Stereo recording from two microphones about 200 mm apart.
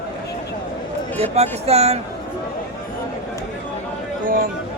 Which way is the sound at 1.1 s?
30° right (ahead or behind).